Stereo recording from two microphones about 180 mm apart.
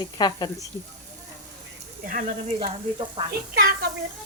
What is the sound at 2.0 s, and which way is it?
Speech, 45° right (ahead or behind).